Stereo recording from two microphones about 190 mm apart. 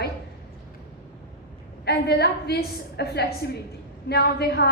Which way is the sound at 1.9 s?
60° left (ahead or behind).